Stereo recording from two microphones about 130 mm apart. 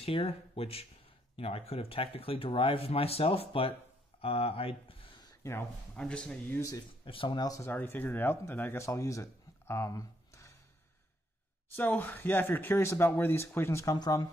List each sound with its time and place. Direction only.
0.0 s speech: 50° left (ahead or behind)
5.4 s speech: 20° left (ahead or behind)
5.9 s speech: 10° left (ahead or behind)
7.1 s speech: 40° left (ahead or behind)
7.7 s speech: 15° left (ahead or behind)
11.7 s speech: 15° left (ahead or behind)